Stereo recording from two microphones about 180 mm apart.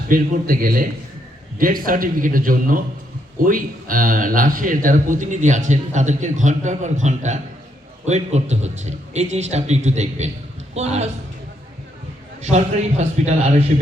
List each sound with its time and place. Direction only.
0.1 s a man's voice: 50° right (ahead or behind)
12.4 s a man's voice: 40° right (ahead or behind)